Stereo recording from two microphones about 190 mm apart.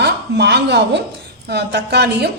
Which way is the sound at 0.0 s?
60° right (ahead or behind).